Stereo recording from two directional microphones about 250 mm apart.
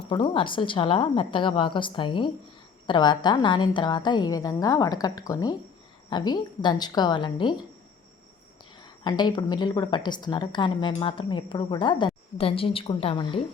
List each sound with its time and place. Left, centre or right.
0.1 s a woman's voice: centre
8.8 s a woman's voice: centre